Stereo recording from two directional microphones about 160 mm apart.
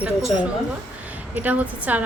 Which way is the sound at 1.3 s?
10° right (ahead or behind).